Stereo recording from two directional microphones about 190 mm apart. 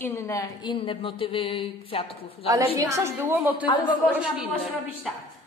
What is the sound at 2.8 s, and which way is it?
A woman's voice, 15° right (ahead or behind).